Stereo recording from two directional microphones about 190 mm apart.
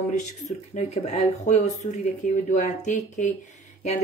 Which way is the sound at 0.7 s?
35° left (ahead or behind).